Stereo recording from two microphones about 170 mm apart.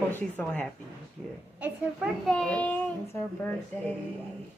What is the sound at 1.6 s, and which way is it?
Speech, 5° right (ahead or behind).